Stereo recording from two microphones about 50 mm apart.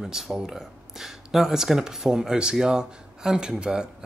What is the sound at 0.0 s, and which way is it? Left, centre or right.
Speech, centre.